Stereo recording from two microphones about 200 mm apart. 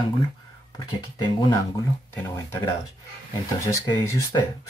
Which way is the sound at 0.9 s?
20° left (ahead or behind).